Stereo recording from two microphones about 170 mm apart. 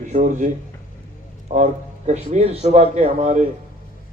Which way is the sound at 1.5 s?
45° right (ahead or behind).